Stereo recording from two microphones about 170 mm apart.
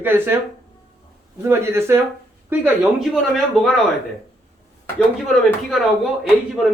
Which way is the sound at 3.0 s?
Centre (ahead or behind).